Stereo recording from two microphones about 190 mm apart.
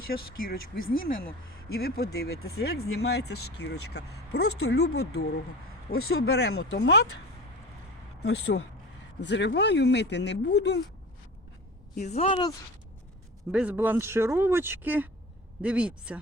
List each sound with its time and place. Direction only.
0.1 s speech: 50° left (ahead or behind); by 5.2 s 75° left (ahead or behind)
5.9 s speech: 90° left; by 7.1 s 60° left (ahead or behind)
8.2 s speech: 60° left (ahead or behind)
11.9 s speech: 35° left (ahead or behind)
13.5 s speech: 5° right (ahead or behind)